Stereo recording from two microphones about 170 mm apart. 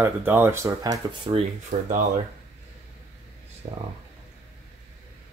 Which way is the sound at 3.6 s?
40° right (ahead or behind).